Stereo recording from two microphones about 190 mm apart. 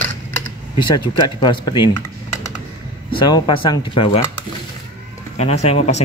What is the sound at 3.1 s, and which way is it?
Speech, 25° left (ahead or behind).